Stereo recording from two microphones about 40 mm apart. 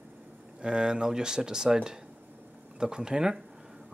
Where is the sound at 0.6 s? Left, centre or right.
Right.